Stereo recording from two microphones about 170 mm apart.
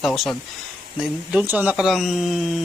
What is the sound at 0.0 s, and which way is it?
Speech, centre (ahead or behind).